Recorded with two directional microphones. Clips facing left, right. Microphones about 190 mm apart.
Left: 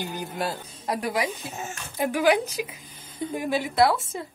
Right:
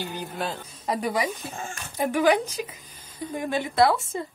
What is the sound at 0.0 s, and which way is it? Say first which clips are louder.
Speech: left 1 dB; 10° left (ahead or behind).